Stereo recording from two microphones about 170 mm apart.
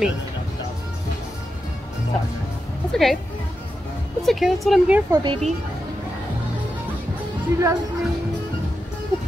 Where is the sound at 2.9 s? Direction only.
Centre (ahead or behind).